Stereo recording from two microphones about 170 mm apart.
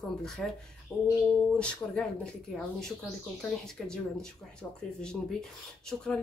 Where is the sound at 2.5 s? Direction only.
Centre (ahead or behind).